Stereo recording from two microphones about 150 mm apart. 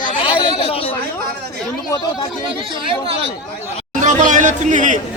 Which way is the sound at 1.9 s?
30° left (ahead or behind).